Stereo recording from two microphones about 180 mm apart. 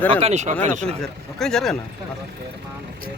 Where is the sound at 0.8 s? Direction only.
5° left (ahead or behind).